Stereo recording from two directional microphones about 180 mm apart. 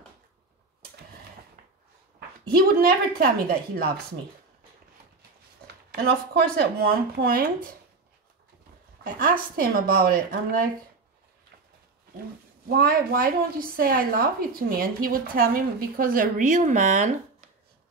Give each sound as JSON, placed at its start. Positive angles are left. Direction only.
{"t": 2.1, "sound": "a woman's voice", "side_deg": -55}
{"t": 5.9, "sound": "a woman's voice", "side_deg": -60}
{"t": 9.0, "sound": "a woman's voice", "side_deg": -50}
{"t": 12.6, "sound": "a woman's voice", "side_deg": -55}